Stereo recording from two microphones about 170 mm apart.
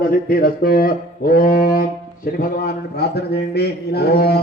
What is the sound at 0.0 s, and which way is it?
Speech, 60° left (ahead or behind).